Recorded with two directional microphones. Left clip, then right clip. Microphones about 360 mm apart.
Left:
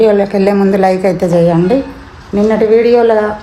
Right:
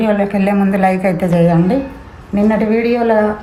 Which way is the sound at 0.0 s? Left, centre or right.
Left.